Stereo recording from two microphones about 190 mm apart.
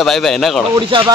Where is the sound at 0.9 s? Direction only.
30° right (ahead or behind).